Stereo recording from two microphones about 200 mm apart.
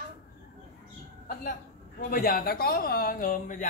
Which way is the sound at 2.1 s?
50° left (ahead or behind).